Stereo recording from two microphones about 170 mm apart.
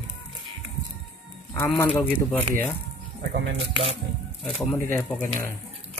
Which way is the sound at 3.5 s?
35° right (ahead or behind).